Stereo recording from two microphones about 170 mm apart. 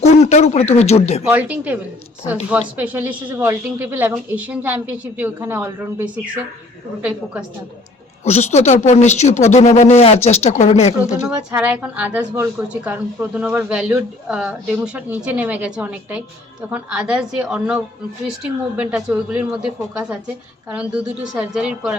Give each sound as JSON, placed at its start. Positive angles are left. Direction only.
{"t": 0.0, "sound": "speech", "side_deg": 40}
{"t": 1.2, "sound": "a woman's voice", "side_deg": -10}
{"t": 8.2, "sound": "speech", "side_deg": 40}
{"t": 11.5, "sound": "a woman's voice", "side_deg": -10}
{"t": 18.8, "sound": "a woman's voice", "side_deg": -5}